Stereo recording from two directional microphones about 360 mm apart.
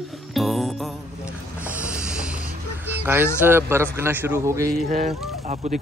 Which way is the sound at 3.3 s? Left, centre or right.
Centre.